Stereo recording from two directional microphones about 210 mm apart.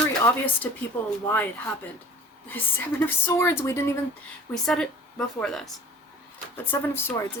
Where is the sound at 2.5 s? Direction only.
10° left (ahead or behind).